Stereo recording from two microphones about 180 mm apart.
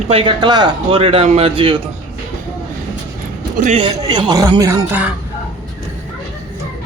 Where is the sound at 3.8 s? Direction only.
25° right (ahead or behind).